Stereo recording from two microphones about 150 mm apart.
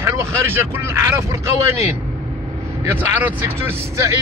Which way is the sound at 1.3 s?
15° right (ahead or behind).